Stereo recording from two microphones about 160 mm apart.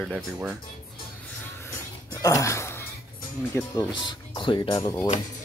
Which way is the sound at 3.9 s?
30° left (ahead or behind).